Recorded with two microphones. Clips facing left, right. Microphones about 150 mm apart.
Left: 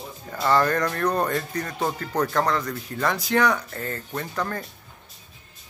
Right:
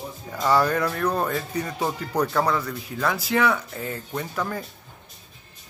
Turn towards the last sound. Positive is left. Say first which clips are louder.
# even
turn(degrees=-10)  # may be behind; listen again after turning